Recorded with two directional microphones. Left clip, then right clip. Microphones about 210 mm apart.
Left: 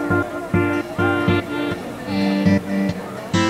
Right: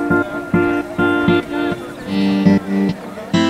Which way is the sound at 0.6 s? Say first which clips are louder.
Right 4 dB; centre (ahead or behind).